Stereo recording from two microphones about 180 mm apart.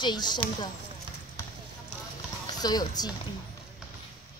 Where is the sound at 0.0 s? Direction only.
25° left (ahead or behind).